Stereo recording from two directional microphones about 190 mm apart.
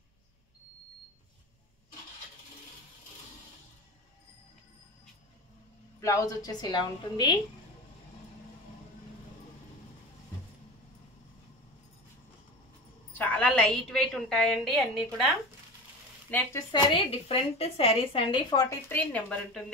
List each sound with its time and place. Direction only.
5.9 s a woman's voice: 15° left (ahead or behind)
13.2 s a woman's voice: 5° left (ahead or behind)
16.3 s speech: 10° left (ahead or behind)
16.7 s a woman's voice: 30° left (ahead or behind); by 19.6 s 5° left (ahead or behind)